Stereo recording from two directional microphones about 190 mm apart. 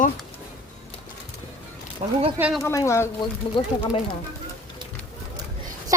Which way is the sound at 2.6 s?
15° left (ahead or behind).